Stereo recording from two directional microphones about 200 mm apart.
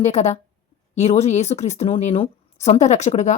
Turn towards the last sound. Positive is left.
turn(degrees=35)  # may be behind; listen again after turning